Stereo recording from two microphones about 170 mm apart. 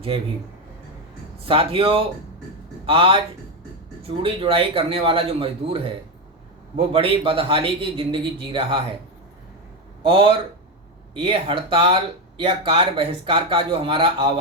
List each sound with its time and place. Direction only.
1.5 s speech: 35° right (ahead or behind)
10.0 s speech: 30° right (ahead or behind)